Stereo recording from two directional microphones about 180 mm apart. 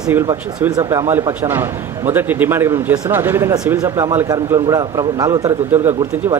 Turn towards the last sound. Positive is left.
turn(degrees=-20)  # may be behind; listen again after turning